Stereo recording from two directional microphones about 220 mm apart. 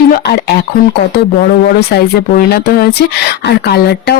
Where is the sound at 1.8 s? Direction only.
45° left (ahead or behind).